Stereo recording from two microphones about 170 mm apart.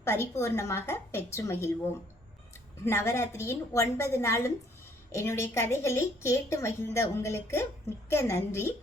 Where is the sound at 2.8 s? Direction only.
15° left (ahead or behind).